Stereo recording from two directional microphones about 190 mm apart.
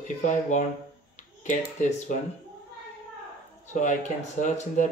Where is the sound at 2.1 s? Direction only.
40° left (ahead or behind).